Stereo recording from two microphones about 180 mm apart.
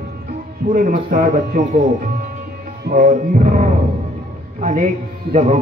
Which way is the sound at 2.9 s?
45° right (ahead or behind).